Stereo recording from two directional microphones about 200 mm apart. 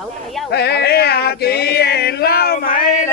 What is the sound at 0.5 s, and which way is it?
Male singing, 55° left (ahead or behind).